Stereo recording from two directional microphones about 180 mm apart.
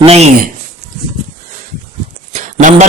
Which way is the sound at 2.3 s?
40° right (ahead or behind).